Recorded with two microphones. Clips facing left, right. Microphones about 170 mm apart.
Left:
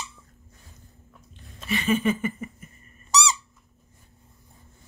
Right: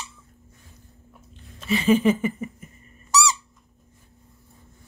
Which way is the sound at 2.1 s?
20° right (ahead or behind).